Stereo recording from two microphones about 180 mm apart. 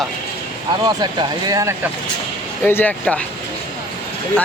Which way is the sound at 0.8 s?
25° right (ahead or behind).